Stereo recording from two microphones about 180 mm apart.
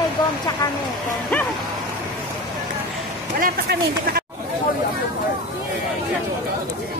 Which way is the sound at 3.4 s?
55° right (ahead or behind).